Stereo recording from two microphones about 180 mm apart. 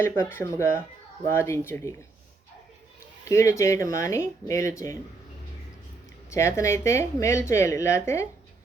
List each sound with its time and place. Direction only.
0.0 s a woman's voice: 15° left (ahead or behind)
3.2 s a woman's voice: 15° left (ahead or behind)
6.3 s a woman's voice: 15° left (ahead or behind)